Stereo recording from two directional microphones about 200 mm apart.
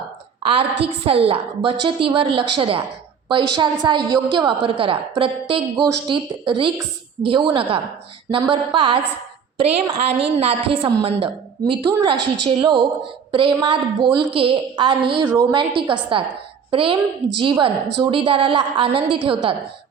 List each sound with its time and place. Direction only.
0.4 s a woman's voice: 30° right (ahead or behind)